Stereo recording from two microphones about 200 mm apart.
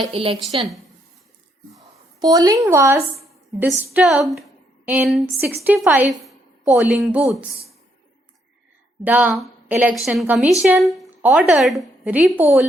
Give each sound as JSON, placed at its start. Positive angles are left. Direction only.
{"t": 0.0, "sound": "a woman's voice", "side_deg": -25}
{"t": 2.1, "sound": "speech", "side_deg": -20}
{"t": 3.8, "sound": "a woman's voice", "side_deg": -5}
{"t": 9.0, "sound": "a woman's voice", "side_deg": -5}